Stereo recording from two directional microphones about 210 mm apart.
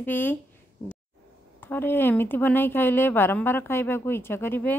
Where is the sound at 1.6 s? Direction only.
10° left (ahead or behind).